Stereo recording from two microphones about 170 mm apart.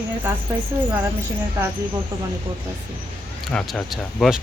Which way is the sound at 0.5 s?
15° right (ahead or behind).